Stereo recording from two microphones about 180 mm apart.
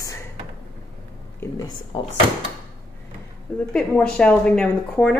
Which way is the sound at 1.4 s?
20° left (ahead or behind).